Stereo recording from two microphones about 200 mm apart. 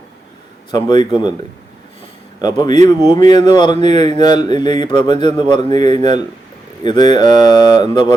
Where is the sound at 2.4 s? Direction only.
20° left (ahead or behind).